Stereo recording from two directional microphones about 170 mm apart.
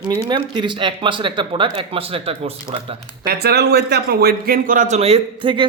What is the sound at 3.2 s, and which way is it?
A man's voice, 70° right (ahead or behind).